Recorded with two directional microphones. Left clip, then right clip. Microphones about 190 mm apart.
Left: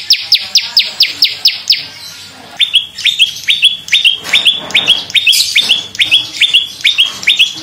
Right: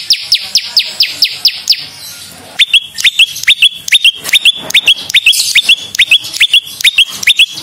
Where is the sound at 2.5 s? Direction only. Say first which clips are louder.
Right 3 dB; 65° right (ahead or behind).